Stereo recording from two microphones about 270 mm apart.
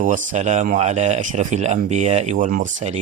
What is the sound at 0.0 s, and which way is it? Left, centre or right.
Speech, right.